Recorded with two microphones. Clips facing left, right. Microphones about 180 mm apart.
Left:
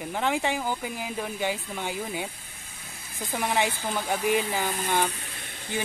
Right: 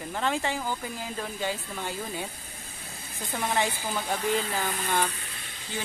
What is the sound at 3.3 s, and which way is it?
Speech, 15° left (ahead or behind).